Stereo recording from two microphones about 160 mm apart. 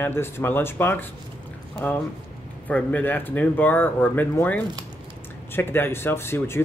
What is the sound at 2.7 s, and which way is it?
Speech, 10° left (ahead or behind).